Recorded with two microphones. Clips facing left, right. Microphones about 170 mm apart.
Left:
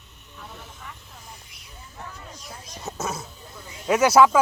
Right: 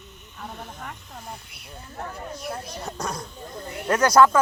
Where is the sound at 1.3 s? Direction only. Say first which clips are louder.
Right 7 dB; 60° right (ahead or behind).